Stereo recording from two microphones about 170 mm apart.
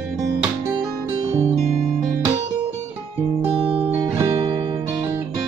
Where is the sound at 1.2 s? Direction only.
40° right (ahead or behind).